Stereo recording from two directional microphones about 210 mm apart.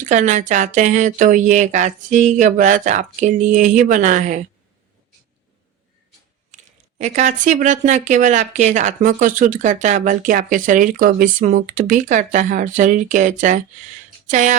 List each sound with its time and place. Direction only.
0.0 s speech: 35° right (ahead or behind)
7.0 s speech: 35° right (ahead or behind)